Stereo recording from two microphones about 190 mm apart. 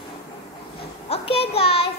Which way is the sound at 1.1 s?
30° left (ahead or behind).